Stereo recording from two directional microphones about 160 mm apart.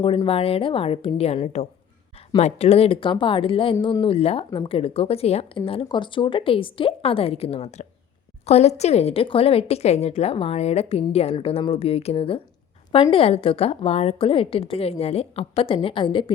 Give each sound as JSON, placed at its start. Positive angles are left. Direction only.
{"t": 0.3, "sound": "speech", "side_deg": 35}